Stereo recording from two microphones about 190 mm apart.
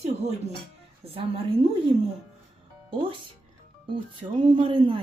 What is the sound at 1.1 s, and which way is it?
Speech, 30° right (ahead or behind).